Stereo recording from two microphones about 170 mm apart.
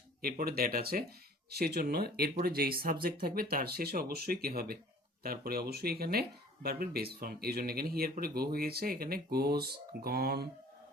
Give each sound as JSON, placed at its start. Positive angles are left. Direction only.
{"t": 0.2, "sound": "speech", "side_deg": -60}